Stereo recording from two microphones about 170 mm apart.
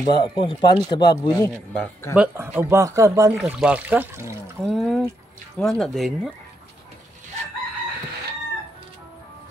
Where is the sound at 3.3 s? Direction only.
Centre (ahead or behind).